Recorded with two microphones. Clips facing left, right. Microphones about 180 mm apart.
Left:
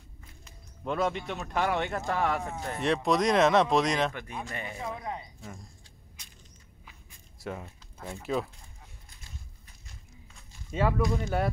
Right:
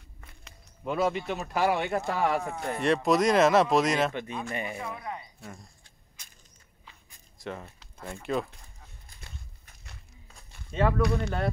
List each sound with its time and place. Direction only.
0.2 s walk: 70° right (ahead or behind)
0.8 s speech: 5° right (ahead or behind)
4.5 s speech: 15° right (ahead or behind)
4.8 s speech: 20° left (ahead or behind)
6.9 s zipper: 5° left (ahead or behind)
8.0 s speech: 5° left (ahead or behind)
10.7 s speech: 10° left (ahead or behind)
11.0 s speech: 70° right (ahead or behind)